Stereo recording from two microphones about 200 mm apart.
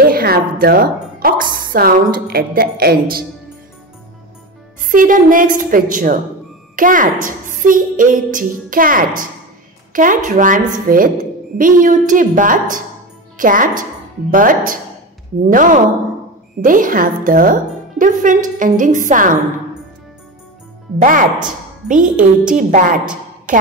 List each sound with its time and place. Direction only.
0.1 s a woman's voice: 45° right (ahead or behind)
4.8 s a woman's voice: 40° right (ahead or behind)
21.0 s a woman's voice: 40° right (ahead or behind)